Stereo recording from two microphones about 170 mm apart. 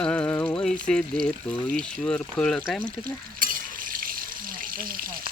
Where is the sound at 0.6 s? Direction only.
5° left (ahead or behind).